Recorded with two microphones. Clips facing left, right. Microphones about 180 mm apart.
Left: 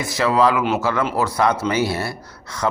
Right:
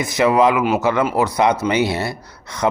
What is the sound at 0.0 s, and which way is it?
Speech, 20° right (ahead or behind).